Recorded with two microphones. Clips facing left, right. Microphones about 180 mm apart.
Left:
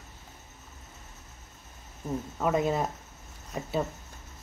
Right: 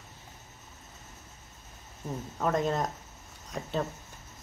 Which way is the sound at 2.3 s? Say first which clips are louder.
Left 1 dB; 5° left (ahead or behind).